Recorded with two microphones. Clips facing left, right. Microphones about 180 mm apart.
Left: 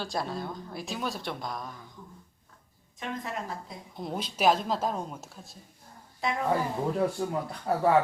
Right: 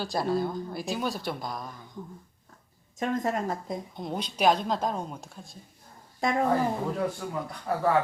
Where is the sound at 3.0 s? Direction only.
45° right (ahead or behind).